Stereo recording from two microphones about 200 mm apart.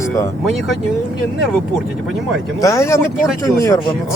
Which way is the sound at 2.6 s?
15° left (ahead or behind).